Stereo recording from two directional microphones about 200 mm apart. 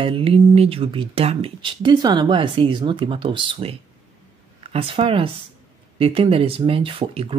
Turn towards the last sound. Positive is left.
turn(degrees=-30)  # may be behind; listen again after turning